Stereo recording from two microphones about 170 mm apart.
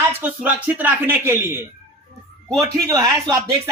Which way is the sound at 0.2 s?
10° right (ahead or behind).